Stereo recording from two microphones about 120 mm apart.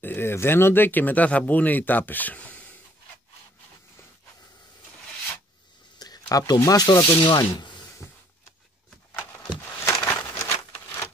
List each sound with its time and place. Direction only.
0.0 s speech: 20° left (ahead or behind)
5.9 s speech: 35° left (ahead or behind)
9.1 s a sound: 20° left (ahead or behind)